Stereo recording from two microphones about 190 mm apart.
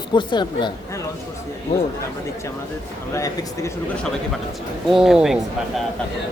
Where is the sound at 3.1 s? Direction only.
15° left (ahead or behind).